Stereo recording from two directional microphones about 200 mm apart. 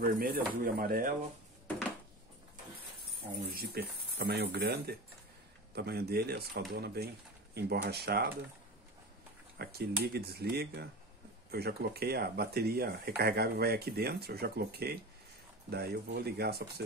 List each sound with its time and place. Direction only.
0.0 s speech: 50° right (ahead or behind)
3.5 s speech: 50° right (ahead or behind)
9.6 s speech: 50° right (ahead or behind)